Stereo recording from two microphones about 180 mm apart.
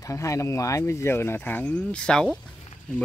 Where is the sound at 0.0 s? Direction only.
15° left (ahead or behind).